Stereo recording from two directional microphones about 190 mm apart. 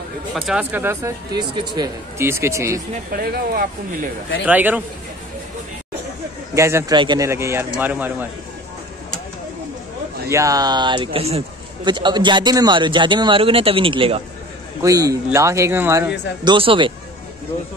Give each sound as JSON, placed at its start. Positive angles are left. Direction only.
{"t": 0.3, "sound": "a man's voice", "side_deg": -5}
{"t": 2.9, "sound": "speech", "side_deg": -50}
{"t": 4.5, "sound": "a man's voice", "side_deg": -10}
{"t": 6.5, "sound": "a man's voice", "side_deg": -15}
{"t": 10.3, "sound": "a man's voice", "side_deg": -20}
{"t": 14.8, "sound": "a man's voice", "side_deg": -20}
{"t": 16.5, "sound": "a man's voice", "side_deg": -25}